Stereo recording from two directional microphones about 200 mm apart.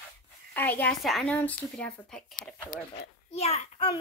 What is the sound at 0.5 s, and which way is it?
A woman's voice, 10° left (ahead or behind).